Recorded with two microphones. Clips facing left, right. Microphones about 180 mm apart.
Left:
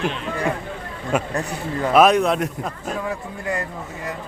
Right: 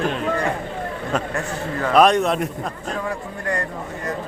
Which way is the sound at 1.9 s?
5° left (ahead or behind).